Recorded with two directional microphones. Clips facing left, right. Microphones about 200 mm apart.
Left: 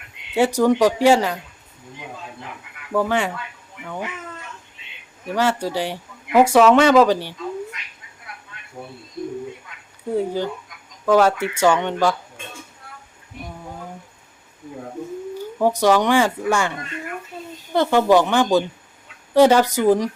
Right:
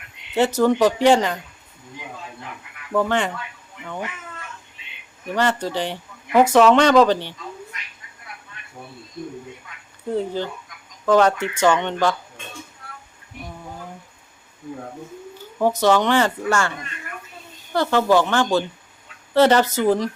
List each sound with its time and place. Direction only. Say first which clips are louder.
0.3 s speech: left 1 dB; 10° left (ahead or behind)
2.9 s speech: even; 5° left (ahead or behind)
5.3 s speech: left 1 dB; 10° left (ahead or behind)
10.1 s speech: left 2 dB; 10° left (ahead or behind)
15.4 s speech: left 1 dB; 10° left (ahead or behind)